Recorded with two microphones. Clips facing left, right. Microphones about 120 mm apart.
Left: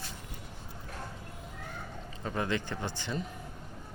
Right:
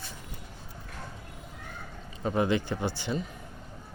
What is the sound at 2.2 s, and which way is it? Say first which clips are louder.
A man's voice: right 6 dB; 15° right (ahead or behind).